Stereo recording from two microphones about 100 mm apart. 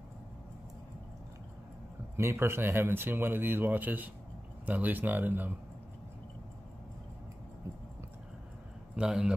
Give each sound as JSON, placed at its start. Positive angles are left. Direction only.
{"t": 2.1, "sound": "speech", "side_deg": -25}
{"t": 8.9, "sound": "speech", "side_deg": -10}